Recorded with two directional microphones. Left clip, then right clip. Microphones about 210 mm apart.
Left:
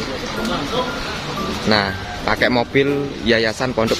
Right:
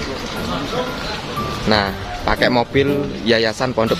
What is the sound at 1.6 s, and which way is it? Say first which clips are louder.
A man's voice: even; 5° right (ahead or behind).